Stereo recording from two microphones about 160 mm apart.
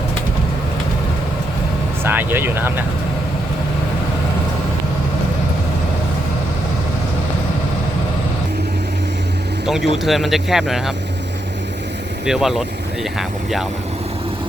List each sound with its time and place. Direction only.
2.0 s speech: 15° right (ahead or behind)
9.6 s speech: centre (ahead or behind)
12.2 s speech: centre (ahead or behind)